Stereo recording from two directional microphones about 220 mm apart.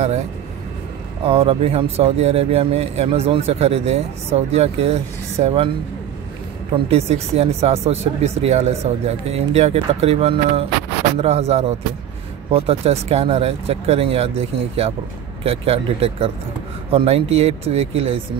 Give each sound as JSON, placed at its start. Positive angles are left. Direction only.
{"t": 1.2, "sound": "speech", "side_deg": -25}
{"t": 6.7, "sound": "speech", "side_deg": -30}
{"t": 15.4, "sound": "speech", "side_deg": -25}